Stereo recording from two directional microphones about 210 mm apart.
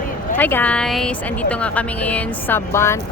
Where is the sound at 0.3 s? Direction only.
10° left (ahead or behind).